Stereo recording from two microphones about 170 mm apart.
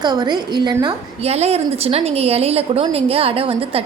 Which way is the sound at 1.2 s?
40° right (ahead or behind).